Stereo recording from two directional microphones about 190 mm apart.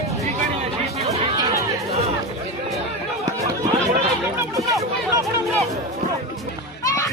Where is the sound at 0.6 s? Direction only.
35° right (ahead or behind).